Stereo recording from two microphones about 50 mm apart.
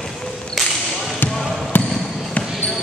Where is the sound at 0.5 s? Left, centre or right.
Centre.